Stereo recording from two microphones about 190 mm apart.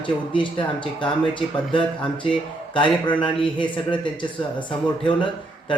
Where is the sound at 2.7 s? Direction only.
25° left (ahead or behind).